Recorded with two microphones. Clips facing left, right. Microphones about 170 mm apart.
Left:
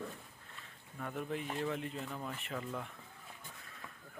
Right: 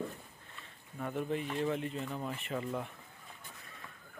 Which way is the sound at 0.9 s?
5° right (ahead or behind).